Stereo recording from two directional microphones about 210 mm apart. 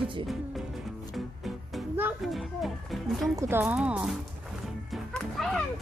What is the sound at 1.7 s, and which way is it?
Music, 5° right (ahead or behind).